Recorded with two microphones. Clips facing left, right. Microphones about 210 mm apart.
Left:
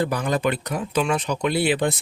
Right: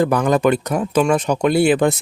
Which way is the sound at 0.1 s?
50° right (ahead or behind).